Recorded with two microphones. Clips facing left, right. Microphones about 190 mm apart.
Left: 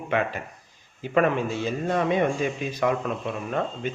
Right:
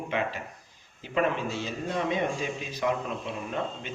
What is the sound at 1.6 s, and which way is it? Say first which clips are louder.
A man's voice: left 6 dB; 55° left (ahead or behind).